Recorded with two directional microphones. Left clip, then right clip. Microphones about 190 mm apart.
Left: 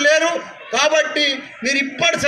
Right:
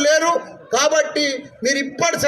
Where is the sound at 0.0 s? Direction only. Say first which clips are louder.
Left 1 dB; 60° right (ahead or behind).